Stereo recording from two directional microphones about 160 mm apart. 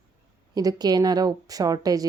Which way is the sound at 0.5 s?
25° right (ahead or behind).